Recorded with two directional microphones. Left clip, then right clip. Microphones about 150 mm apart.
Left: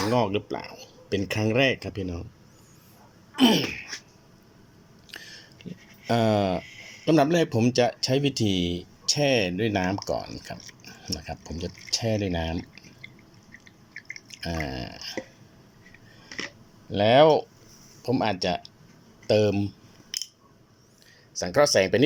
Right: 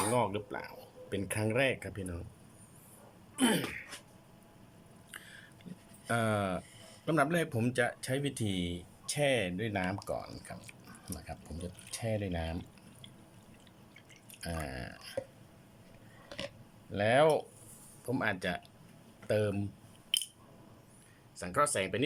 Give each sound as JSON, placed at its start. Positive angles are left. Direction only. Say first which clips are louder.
{"t": 0.1, "sound": "speech", "louder": "left 7 dB", "side_deg": 20}
{"t": 3.3, "sound": "drip", "louder": "left 10 dB", "side_deg": 15}
{"t": 6.1, "sound": "speech", "louder": "left 9 dB", "side_deg": 20}
{"t": 14.6, "sound": "drip", "louder": "left 9 dB", "side_deg": 15}
{"t": 16.9, "sound": "speech", "louder": "left 9 dB", "side_deg": 25}
{"t": 21.3, "sound": "speech", "louder": "left 11 dB", "side_deg": 40}